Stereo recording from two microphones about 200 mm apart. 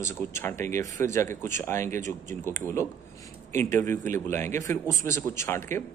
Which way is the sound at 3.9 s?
10° left (ahead or behind).